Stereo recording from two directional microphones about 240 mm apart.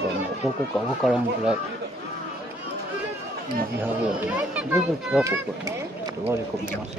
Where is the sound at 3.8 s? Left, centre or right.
Centre.